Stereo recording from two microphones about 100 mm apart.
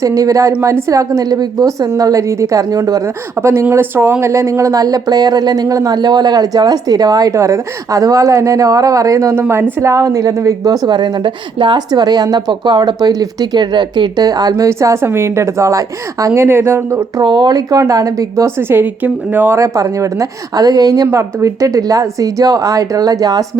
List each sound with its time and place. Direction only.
0.0 s speech: 35° right (ahead or behind)
9.3 s speech: 25° right (ahead or behind)
10.8 s speech: 45° right (ahead or behind); by 17.1 s 25° right (ahead or behind)
17.2 s speech: 45° right (ahead or behind); by 19.5 s 20° right (ahead or behind)
19.5 s speech: 30° right (ahead or behind)